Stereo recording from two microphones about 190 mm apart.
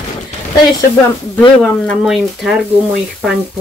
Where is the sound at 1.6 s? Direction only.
Centre (ahead or behind).